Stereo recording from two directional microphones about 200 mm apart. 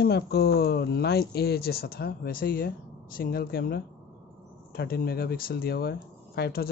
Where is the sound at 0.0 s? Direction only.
50° left (ahead or behind).